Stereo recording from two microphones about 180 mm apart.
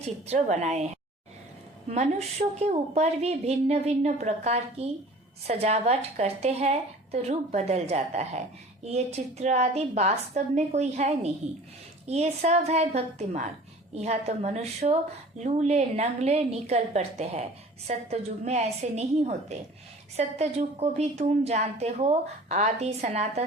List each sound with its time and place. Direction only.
0.0 s a woman's voice: 40° right (ahead or behind)
1.9 s a woman's voice: 40° right (ahead or behind)